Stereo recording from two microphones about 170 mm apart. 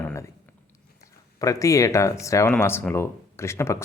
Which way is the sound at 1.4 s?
20° left (ahead or behind).